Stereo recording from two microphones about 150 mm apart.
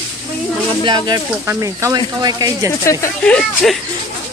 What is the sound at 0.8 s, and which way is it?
Speech, 30° right (ahead or behind).